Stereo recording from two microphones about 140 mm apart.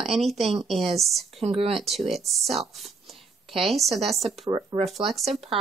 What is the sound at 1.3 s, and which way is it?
Speech, 45° right (ahead or behind).